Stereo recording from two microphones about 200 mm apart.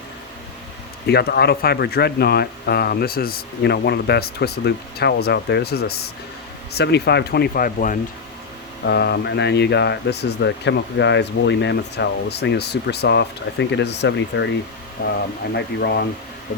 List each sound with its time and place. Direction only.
1.0 s speech: 50° left (ahead or behind)
8.8 s speech: 55° left (ahead or behind)
15.0 s speech: 45° left (ahead or behind)